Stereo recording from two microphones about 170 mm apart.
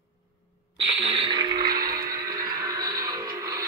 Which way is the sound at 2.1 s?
20° right (ahead or behind).